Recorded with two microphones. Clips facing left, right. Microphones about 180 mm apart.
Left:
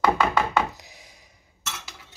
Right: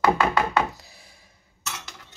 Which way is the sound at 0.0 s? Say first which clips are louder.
Right 1 dB; 5° right (ahead or behind).